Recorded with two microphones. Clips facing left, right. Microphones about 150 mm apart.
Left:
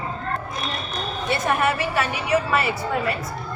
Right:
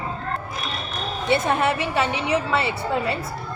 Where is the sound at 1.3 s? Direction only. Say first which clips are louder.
Right 2 dB; 25° right (ahead or behind).